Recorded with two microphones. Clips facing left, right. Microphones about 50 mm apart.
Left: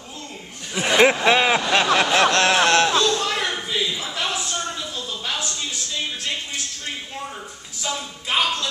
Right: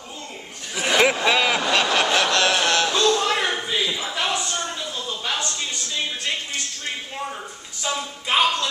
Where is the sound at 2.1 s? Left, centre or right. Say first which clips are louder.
Left 3 dB; left.